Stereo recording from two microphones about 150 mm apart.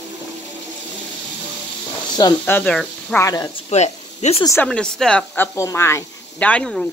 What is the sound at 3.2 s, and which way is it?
Speech, 20° left (ahead or behind).